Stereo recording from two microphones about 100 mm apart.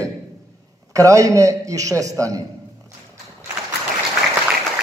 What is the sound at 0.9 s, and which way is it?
A man's voice, 35° right (ahead or behind).